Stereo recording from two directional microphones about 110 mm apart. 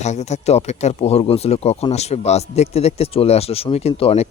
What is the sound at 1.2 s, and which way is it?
Speech, 65° left (ahead or behind).